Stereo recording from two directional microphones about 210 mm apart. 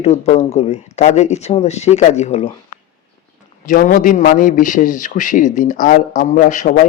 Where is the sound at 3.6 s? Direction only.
40° left (ahead or behind).